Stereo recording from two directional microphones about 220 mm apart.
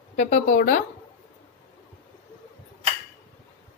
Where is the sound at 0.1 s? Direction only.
35° left (ahead or behind).